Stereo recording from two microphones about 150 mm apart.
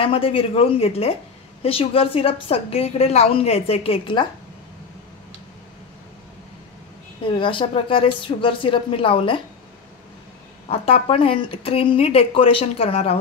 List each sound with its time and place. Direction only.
0.0 s a woman's voice: 40° left (ahead or behind)
7.2 s a woman's voice: 35° left (ahead or behind)
10.7 s a woman's voice: 40° left (ahead or behind)